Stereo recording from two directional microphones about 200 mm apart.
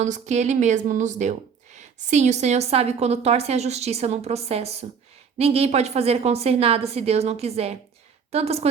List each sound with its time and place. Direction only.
0.0 s a woman's voice: 35° right (ahead or behind)